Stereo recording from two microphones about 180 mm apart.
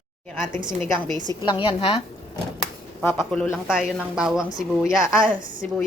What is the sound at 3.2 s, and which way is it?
Speech, 5° left (ahead or behind).